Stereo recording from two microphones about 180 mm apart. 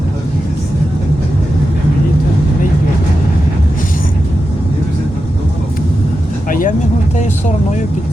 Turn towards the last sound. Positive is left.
turn(degrees=50)  # may be behind; listen again after turning